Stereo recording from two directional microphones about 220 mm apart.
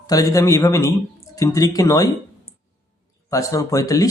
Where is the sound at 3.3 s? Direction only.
15° left (ahead or behind).